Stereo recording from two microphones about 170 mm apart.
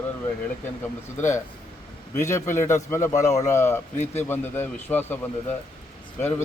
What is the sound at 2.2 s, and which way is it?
A man's voice, 15° left (ahead or behind).